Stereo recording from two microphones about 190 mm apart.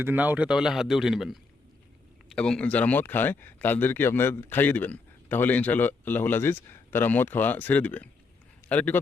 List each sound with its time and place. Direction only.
0.0 s a man's voice: 10° right (ahead or behind); by 9.0 s 10° left (ahead or behind)